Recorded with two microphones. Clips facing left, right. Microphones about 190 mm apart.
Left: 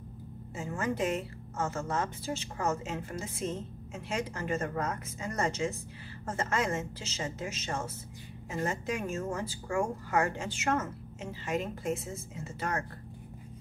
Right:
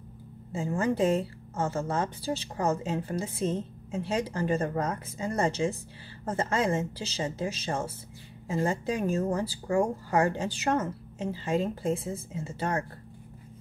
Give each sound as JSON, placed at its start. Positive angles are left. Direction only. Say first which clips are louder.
{"t": 0.5, "sound": "a woman's voice", "louder": "right 6 dB", "side_deg": -30}